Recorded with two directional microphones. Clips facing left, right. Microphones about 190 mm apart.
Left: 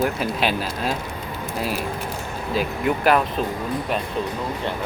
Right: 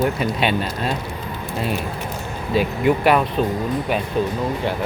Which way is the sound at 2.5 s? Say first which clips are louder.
Right 5 dB; centre (ahead or behind).